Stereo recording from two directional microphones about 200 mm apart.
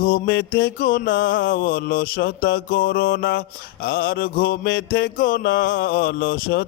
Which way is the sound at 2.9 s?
65° left (ahead or behind).